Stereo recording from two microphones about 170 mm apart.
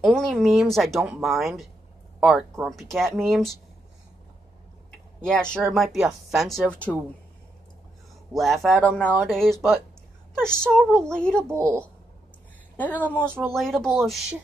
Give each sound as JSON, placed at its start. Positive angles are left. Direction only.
{"t": 0.0, "sound": "speech", "side_deg": 5}
{"t": 5.2, "sound": "speech", "side_deg": 5}
{"t": 8.3, "sound": "speech", "side_deg": 0}
{"t": 11.4, "sound": "a woman's voice", "side_deg": -15}
{"t": 12.7, "sound": "speech", "side_deg": 10}